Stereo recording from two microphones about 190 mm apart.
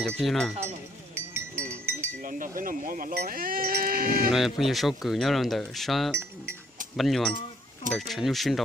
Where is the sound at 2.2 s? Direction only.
45° right (ahead or behind).